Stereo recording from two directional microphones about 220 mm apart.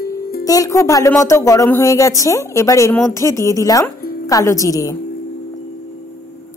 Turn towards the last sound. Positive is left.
turn(degrees=15)  # may be behind; listen again after turning